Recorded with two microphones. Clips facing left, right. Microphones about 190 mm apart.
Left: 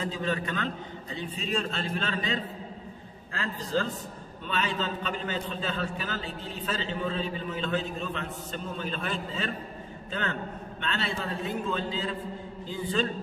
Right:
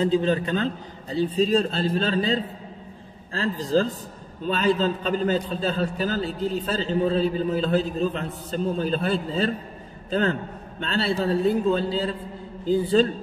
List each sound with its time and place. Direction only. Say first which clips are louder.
0.0 s a man's voice: right 9 dB; 30° right (ahead or behind)
10.8 s a man's voice: right 8 dB; 35° right (ahead or behind)